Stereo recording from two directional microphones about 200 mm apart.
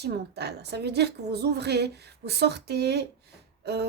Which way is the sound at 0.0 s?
55° right (ahead or behind).